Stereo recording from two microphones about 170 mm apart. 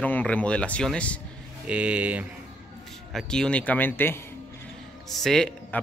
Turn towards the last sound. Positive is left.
turn(degrees=5)  # may be behind; listen again after turning